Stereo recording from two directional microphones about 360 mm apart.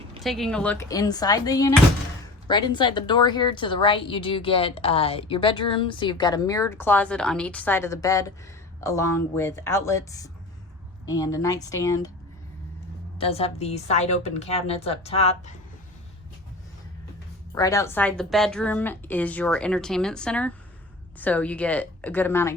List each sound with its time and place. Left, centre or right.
0.2 s a woman's voice: centre
13.1 s a woman's voice: centre
17.5 s a woman's voice: centre